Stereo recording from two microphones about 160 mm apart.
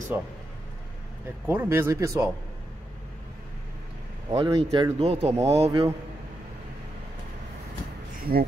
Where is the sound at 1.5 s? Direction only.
15° right (ahead or behind).